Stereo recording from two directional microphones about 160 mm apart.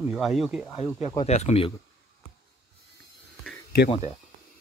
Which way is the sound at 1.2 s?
40° left (ahead or behind).